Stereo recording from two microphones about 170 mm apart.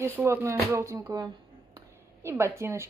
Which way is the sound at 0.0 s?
15° right (ahead or behind).